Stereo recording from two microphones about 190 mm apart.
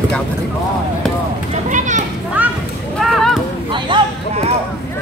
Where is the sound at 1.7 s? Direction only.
40° right (ahead or behind).